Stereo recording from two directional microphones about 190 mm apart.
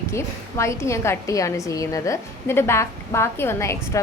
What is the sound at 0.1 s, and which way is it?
A woman's voice, 15° left (ahead or behind).